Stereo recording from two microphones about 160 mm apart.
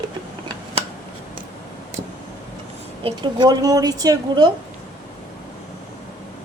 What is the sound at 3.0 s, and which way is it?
A woman's voice, 30° right (ahead or behind).